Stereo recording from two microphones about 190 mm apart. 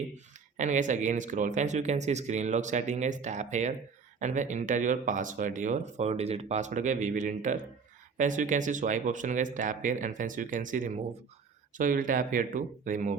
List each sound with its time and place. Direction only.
0.5 s speech: 40° right (ahead or behind)